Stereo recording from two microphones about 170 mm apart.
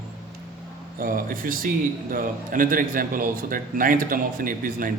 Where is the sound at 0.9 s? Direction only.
55° right (ahead or behind).